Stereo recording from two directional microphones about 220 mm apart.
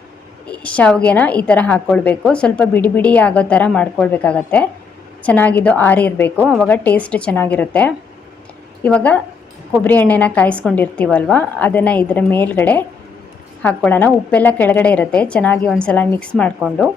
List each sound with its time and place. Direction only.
0.4 s a woman's voice: 5° left (ahead or behind)